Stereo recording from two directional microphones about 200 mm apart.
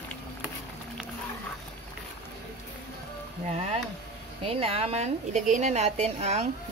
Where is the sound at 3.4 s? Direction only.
30° right (ahead or behind).